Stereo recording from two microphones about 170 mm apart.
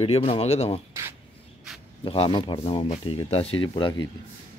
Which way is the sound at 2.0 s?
30° left (ahead or behind).